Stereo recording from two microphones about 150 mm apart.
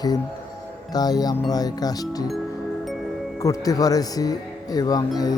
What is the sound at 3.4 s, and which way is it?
Speech, 25° left (ahead or behind).